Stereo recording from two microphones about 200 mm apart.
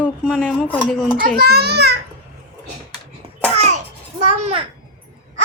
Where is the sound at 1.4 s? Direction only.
50° right (ahead or behind).